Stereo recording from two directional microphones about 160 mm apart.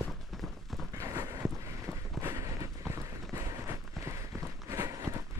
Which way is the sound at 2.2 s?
20° right (ahead or behind).